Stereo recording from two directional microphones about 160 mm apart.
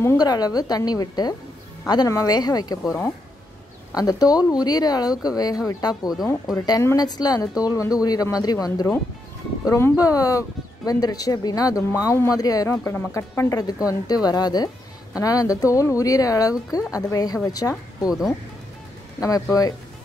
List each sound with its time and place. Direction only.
0.0 s speech: 20° left (ahead or behind)
3.9 s speech: 20° left (ahead or behind)
19.1 s speech: 20° left (ahead or behind)